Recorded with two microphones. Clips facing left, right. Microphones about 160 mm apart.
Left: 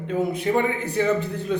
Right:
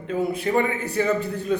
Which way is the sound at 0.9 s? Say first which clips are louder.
Left 1 dB; 10° right (ahead or behind).